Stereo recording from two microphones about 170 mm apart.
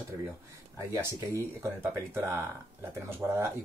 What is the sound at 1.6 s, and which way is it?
Speech, 15° right (ahead or behind).